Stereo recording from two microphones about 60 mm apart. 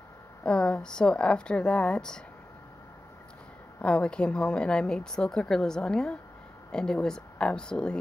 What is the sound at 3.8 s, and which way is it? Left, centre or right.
Speech, centre.